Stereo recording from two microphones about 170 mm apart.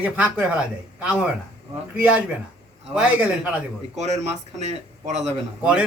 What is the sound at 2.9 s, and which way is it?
Speech, 5° right (ahead or behind).